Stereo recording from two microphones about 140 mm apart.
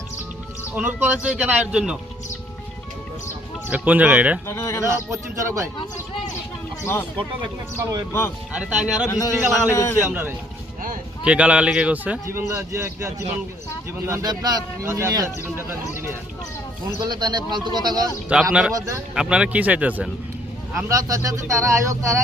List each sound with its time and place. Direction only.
0.8 s a man's voice: 10° right (ahead or behind)
3.7 s a man's voice: 10° right (ahead or behind)
4.4 s speech: 20° left (ahead or behind)
5.1 s speech: 20° right (ahead or behind)
8.5 s a man's voice: 10° right (ahead or behind)
9.0 s speech: 25° left (ahead or behind)
10.1 s a man's voice: 15° right (ahead or behind)
17.0 s speech: 30° right (ahead or behind)
18.3 s a man's voice: 10° right (ahead or behind)
18.7 s speech: 20° right (ahead or behind)
19.1 s a man's voice: 5° right (ahead or behind)
20.7 s speech: 20° right (ahead or behind)